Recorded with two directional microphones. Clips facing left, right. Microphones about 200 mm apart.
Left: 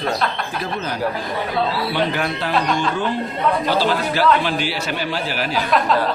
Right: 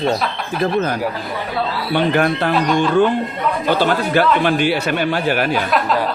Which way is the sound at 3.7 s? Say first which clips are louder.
Right 3 dB; 55° right (ahead or behind).